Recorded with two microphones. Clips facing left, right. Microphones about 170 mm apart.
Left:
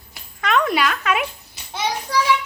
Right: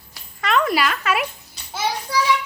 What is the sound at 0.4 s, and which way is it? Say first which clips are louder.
A child's voice: even; centre (ahead or behind).